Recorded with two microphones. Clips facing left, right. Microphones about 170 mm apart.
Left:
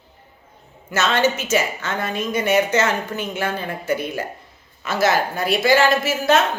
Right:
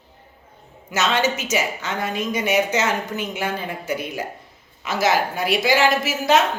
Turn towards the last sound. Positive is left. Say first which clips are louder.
# left 1 dB
turn(degrees=-15)  # may be behind; listen again after turning